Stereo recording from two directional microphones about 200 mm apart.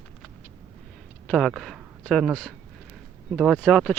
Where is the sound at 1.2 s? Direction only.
5° left (ahead or behind).